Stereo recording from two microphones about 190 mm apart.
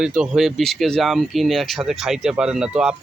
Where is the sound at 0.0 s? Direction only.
5° right (ahead or behind).